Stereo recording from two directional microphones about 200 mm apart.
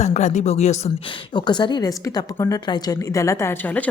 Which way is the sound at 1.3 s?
20° left (ahead or behind).